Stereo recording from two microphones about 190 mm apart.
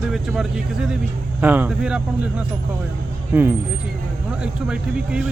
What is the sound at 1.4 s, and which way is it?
Speech, 10° right (ahead or behind).